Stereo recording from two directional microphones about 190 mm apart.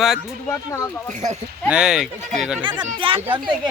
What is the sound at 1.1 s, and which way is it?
Speech, 40° right (ahead or behind).